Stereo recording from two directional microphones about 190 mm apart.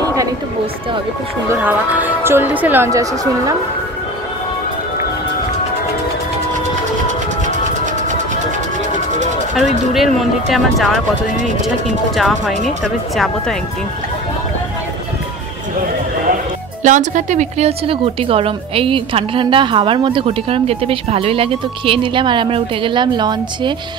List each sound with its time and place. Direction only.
0.0 s a sound: 15° right (ahead or behind)
1.5 s speech: 10° right (ahead or behind)
7.4 s music: 40° right (ahead or behind)
9.9 s speech: centre (ahead or behind)
12.2 s speech: centre (ahead or behind)
16.8 s speech: 40° right (ahead or behind); by 23.7 s 25° right (ahead or behind)